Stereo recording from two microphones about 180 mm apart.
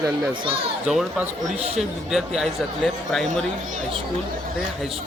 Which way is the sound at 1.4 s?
35° right (ahead or behind).